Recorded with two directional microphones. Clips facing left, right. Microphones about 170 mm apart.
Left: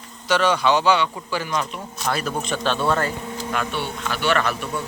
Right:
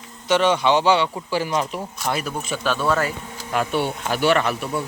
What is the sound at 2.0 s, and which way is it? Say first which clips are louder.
Speech: left 1 dB; 20° right (ahead or behind).